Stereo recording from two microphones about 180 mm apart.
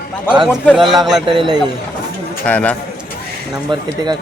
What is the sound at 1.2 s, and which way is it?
Speech, 25° right (ahead or behind).